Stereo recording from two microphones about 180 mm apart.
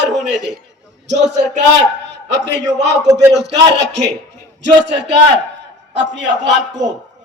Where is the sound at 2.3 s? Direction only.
75° right (ahead or behind).